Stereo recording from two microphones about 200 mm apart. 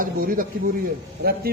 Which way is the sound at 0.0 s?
45° right (ahead or behind).